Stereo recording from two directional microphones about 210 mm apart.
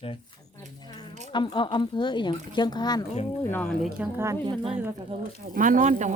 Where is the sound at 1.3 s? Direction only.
20° left (ahead or behind).